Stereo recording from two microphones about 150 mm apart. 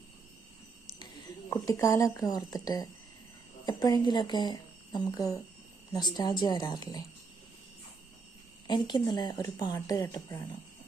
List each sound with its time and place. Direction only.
0.9 s a woman's voice: 30° left (ahead or behind)
8.6 s a woman's voice: 30° left (ahead or behind)